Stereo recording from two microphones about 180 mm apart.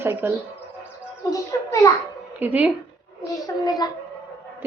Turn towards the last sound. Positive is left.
turn(degrees=20)  # may be behind; listen again after turning